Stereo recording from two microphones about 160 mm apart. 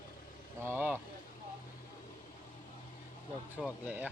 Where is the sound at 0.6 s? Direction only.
15° right (ahead or behind).